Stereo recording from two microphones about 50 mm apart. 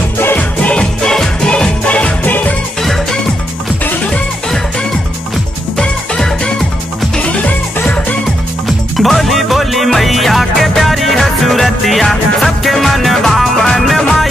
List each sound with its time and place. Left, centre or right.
0.4 s music: left
2.2 s music: left
2.8 s music: centre
5.8 s music: centre
7.2 s music: left
8.6 s music: centre